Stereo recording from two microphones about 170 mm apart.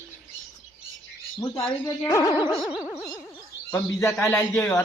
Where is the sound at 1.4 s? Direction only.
20° left (ahead or behind).